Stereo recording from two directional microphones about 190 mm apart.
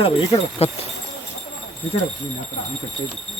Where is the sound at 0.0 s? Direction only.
30° left (ahead or behind).